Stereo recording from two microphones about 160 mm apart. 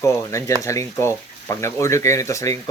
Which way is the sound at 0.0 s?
20° left (ahead or behind).